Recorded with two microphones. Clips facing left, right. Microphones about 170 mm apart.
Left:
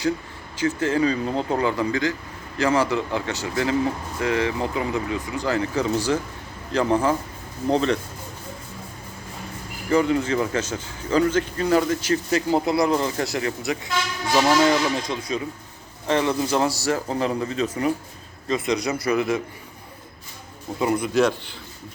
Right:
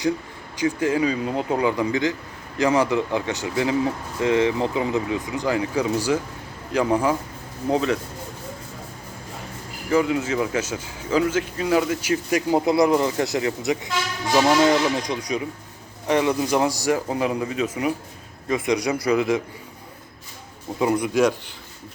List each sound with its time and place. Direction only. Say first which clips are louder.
0.5 s speech: right 1 dB; 15° right (ahead or behind)
9.9 s speech: left 1 dB; 5° right (ahead or behind)
20.7 s speech: right 1 dB; 15° right (ahead or behind)